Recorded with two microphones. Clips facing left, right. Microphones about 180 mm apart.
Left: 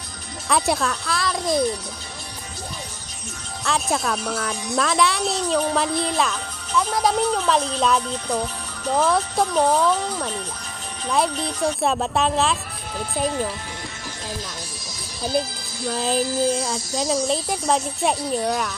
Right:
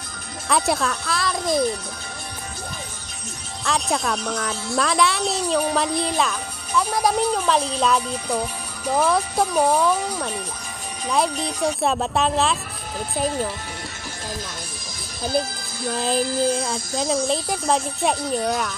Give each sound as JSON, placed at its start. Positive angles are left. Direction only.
{"t": 0.5, "sound": "speech", "side_deg": 0}
{"t": 3.6, "sound": "speech", "side_deg": 0}
{"t": 15.9, "sound": "speech", "side_deg": 0}